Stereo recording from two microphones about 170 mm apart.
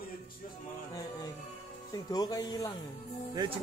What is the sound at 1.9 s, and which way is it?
Speech, 20° left (ahead or behind).